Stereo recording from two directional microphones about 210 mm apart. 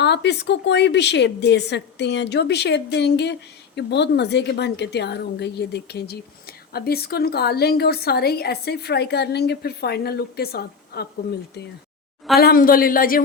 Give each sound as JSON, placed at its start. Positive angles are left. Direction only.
{"t": 0.0, "sound": "a woman's voice", "side_deg": 55}
{"t": 12.4, "sound": "a woman's voice", "side_deg": 45}